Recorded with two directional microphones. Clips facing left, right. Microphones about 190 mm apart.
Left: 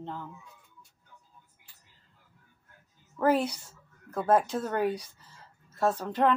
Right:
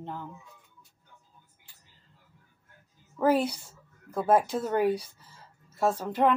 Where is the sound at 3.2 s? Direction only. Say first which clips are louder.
Right 1 dB; 10° right (ahead or behind).